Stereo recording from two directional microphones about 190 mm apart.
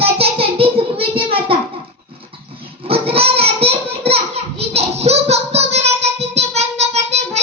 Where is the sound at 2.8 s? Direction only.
30° right (ahead or behind).